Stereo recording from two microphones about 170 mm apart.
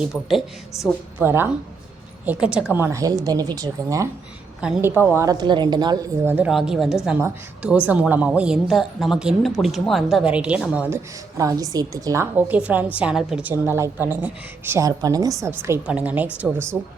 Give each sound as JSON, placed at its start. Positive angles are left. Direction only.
{"t": 0.0, "sound": "a woman's voice", "side_deg": 0}
{"t": 1.2, "sound": "a woman's voice", "side_deg": -15}
{"t": 6.2, "sound": "a woman's voice", "side_deg": -10}
{"t": 13.5, "sound": "a woman's voice", "side_deg": -15}